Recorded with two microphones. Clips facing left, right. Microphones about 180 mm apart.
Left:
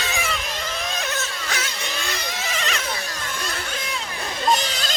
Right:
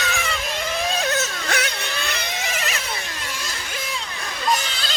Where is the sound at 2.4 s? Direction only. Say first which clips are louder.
Left 2 dB; 10° right (ahead or behind).